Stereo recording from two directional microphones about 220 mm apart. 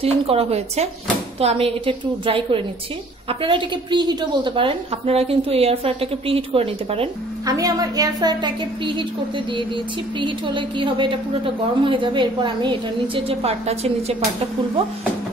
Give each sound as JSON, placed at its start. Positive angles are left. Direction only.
{"t": 0.0, "sound": "a woman's voice", "side_deg": -25}
{"t": 10.1, "sound": "a woman's voice", "side_deg": -20}